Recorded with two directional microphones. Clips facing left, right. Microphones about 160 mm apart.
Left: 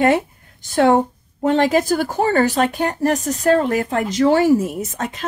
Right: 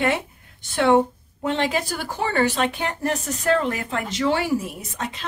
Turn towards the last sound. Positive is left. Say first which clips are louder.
# left 6 dB
turn(degrees=45)  # may be behind; listen again after turning